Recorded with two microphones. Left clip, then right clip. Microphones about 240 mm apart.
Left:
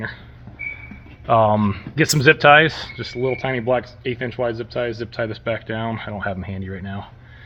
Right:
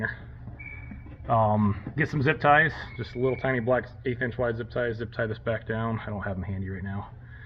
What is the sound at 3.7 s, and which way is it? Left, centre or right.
Speech, left.